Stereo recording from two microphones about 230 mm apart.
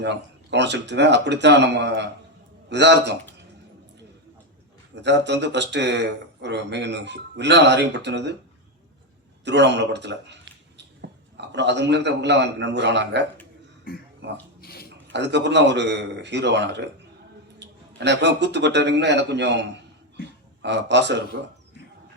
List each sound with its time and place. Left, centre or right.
0.0 s speech: right
4.9 s speech: right
9.4 s speech: right
13.9 s speech: left
14.2 s speech: right
14.6 s a sound: left
15.1 s speech: right